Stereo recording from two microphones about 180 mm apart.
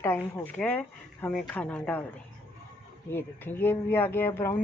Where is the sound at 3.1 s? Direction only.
10° left (ahead or behind).